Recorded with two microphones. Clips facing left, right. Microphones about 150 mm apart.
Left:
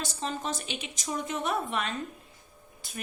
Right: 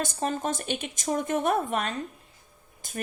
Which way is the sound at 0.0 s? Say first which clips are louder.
Right 5 dB; 50° right (ahead or behind).